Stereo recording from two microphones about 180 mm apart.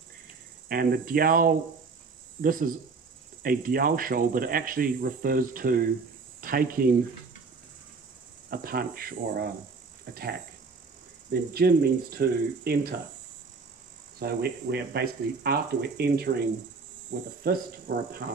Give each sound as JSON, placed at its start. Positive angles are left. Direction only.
{"t": 0.7, "sound": "speech", "side_deg": -55}
{"t": 8.5, "sound": "speech", "side_deg": -55}
{"t": 11.5, "sound": "speech", "side_deg": -60}
{"t": 14.2, "sound": "speech", "side_deg": -65}